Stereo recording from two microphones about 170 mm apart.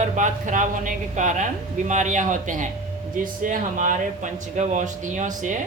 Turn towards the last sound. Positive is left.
turn(degrees=-50)  # may be behind; listen again after turning